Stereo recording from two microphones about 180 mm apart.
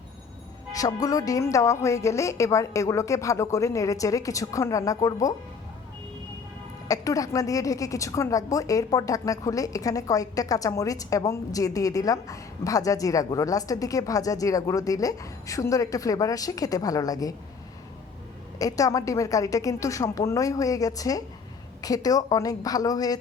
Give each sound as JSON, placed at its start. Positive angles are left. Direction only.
{"t": 0.7, "sound": "a woman's voice", "side_deg": 20}
{"t": 6.8, "sound": "a woman's voice", "side_deg": 20}
{"t": 18.6, "sound": "a woman's voice", "side_deg": 20}